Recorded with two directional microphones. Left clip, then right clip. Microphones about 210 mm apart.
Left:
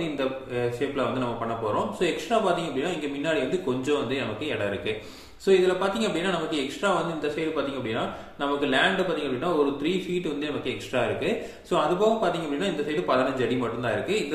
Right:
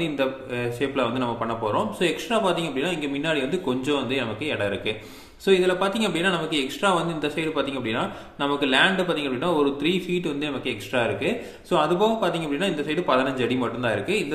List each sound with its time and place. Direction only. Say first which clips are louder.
0.0 s a man's voice: right 3 dB; 35° right (ahead or behind)
11.0 s a man's voice: right 2 dB; 30° right (ahead or behind)